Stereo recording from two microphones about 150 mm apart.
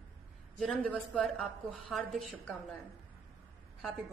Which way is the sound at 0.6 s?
5° left (ahead or behind).